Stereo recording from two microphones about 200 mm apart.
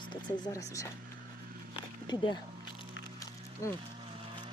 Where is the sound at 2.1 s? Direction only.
20° left (ahead or behind).